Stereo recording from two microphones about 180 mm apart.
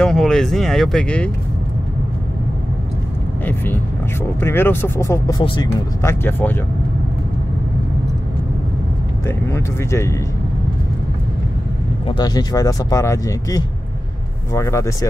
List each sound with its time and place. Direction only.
0.0 s speech: centre (ahead or behind)
3.4 s speech: 10° left (ahead or behind)
6.0 s speech: 10° left (ahead or behind)
9.2 s speech: 15° left (ahead or behind)
12.1 s speech: 25° left (ahead or behind)